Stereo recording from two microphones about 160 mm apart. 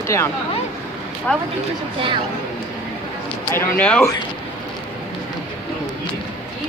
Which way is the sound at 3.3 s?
15° left (ahead or behind).